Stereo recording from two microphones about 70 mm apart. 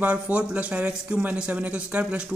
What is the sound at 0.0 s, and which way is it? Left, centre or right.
Speech, centre.